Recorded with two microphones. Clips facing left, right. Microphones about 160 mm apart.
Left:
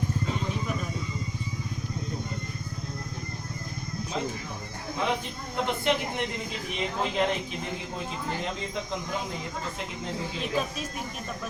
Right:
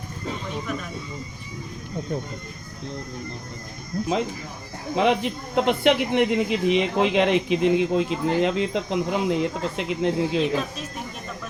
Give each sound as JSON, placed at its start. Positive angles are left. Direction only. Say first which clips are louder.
{"t": 4.9, "sound": "speech", "louder": "right 9 dB", "side_deg": -90}